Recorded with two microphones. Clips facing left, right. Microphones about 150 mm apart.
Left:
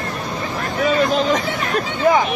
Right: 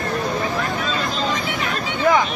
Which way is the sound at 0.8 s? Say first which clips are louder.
Left 8 dB; 65° left (ahead or behind).